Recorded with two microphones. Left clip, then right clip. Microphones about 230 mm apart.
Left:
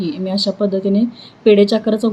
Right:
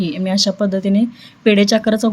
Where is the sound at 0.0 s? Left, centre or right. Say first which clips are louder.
Right 1 dB; right.